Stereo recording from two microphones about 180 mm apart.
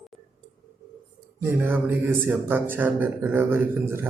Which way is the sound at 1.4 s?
10° right (ahead or behind).